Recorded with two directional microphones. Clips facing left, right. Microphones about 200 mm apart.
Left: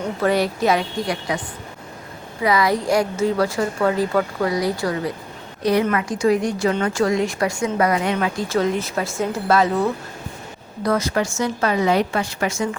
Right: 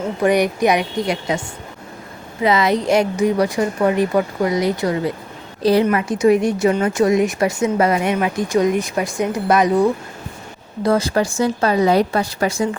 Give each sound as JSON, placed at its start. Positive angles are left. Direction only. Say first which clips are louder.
{"t": 0.2, "sound": "speech", "louder": "right 4 dB", "side_deg": -15}
{"t": 2.4, "sound": "speech", "louder": "right 2 dB", "side_deg": -25}
{"t": 10.8, "sound": "speech", "louder": "right 3 dB", "side_deg": -30}